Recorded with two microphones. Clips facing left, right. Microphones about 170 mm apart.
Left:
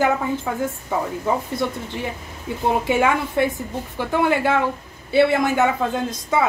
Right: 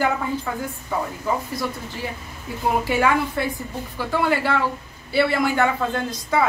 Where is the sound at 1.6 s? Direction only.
25° left (ahead or behind).